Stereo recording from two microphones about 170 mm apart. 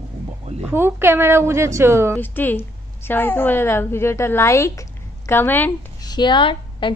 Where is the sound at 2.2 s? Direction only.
10° left (ahead or behind).